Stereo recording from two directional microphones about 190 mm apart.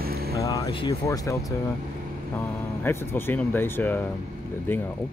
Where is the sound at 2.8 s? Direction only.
10° left (ahead or behind).